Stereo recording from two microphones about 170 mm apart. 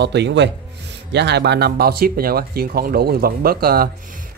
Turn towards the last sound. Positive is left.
turn(degrees=-60)  # may be behind; listen again after turning